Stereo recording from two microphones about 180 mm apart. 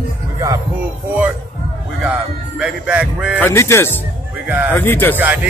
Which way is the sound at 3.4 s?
15° left (ahead or behind).